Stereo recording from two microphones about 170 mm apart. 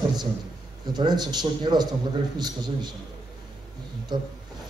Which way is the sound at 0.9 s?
25° right (ahead or behind).